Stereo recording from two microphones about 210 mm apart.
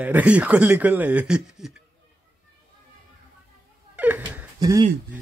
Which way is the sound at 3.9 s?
10° right (ahead or behind).